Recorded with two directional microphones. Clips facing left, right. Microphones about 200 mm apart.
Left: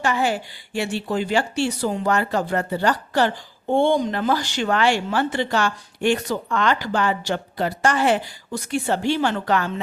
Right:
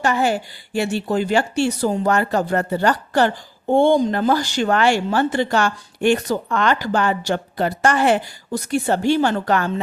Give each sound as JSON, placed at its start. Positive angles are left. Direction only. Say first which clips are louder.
{"t": 0.0, "sound": "a woman's voice", "louder": "right 3 dB", "side_deg": -45}
{"t": 8.5, "sound": "a woman's voice", "louder": "right 3 dB", "side_deg": -40}